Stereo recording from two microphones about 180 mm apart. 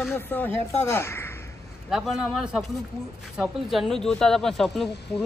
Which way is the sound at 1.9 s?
Centre (ahead or behind).